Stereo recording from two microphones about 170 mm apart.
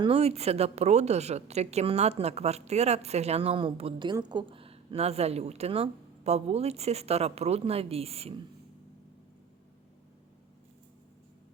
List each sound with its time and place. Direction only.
0.0 s a woman's voice: 35° right (ahead or behind)